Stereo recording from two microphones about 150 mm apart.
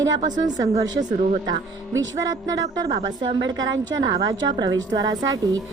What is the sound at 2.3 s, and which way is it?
A woman's voice, 25° right (ahead or behind).